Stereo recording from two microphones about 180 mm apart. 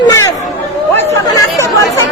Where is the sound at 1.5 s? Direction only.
20° left (ahead or behind).